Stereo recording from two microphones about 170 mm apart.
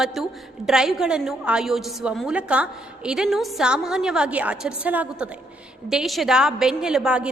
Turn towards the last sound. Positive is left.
turn(degrees=-5)  # may be behind; listen again after turning